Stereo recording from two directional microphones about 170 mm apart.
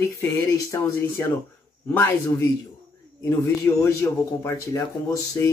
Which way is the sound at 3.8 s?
20° left (ahead or behind).